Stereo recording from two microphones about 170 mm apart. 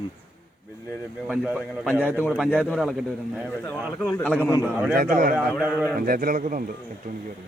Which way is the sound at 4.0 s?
15° left (ahead or behind).